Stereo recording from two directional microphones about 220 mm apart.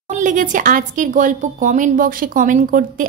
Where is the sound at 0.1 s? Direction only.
35° right (ahead or behind).